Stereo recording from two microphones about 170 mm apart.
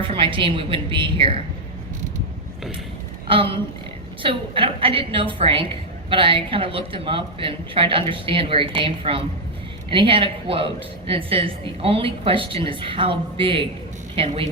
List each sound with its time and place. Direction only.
0.0 s a woman's voice: 30° right (ahead or behind)
3.2 s a woman's voice: 30° right (ahead or behind)